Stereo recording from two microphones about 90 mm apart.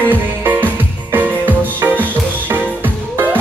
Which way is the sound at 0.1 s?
20° right (ahead or behind).